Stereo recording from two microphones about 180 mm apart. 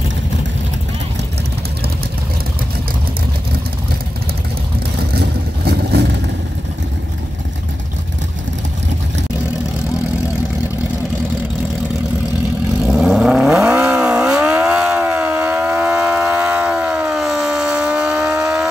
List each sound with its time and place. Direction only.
5.7 s vehicle: 60° right (ahead or behind)
12.8 s vehicle: centre (ahead or behind)
14.4 s a sound: 5° right (ahead or behind)